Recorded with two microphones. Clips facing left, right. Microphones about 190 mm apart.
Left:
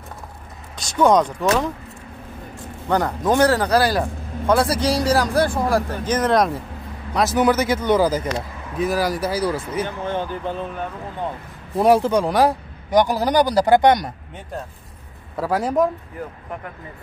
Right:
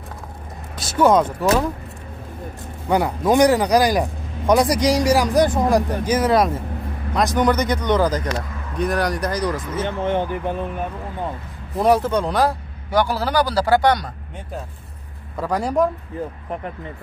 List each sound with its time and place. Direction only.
0.7 s speech: 5° right (ahead or behind)
2.9 s a man's voice: 10° right (ahead or behind); by 9.8 s 10° left (ahead or behind)
9.8 s speech: 20° right (ahead or behind)
11.8 s a man's voice: 10° left (ahead or behind)
15.3 s speech: 5° left (ahead or behind)